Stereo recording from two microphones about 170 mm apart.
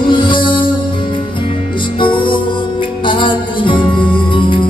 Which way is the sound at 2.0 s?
30° left (ahead or behind).